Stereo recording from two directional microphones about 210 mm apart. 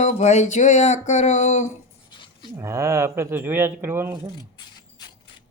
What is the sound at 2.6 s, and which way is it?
Speech, 15° right (ahead or behind).